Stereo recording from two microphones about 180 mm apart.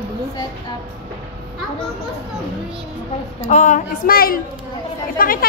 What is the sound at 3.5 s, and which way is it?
A woman's voice, 45° left (ahead or behind).